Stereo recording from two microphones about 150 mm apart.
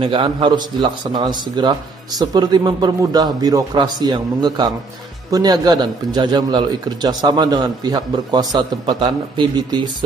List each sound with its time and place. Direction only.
0.0 s a man's voice: 35° right (ahead or behind)